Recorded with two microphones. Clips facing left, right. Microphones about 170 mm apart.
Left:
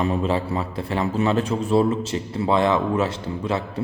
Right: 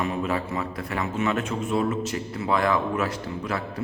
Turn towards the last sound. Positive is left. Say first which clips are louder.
# left 4 dB
turn(degrees=25)  # may be behind; listen again after turning